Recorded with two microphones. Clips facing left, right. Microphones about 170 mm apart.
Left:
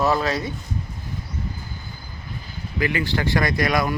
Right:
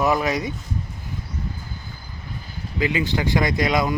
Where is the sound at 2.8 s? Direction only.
20° right (ahead or behind).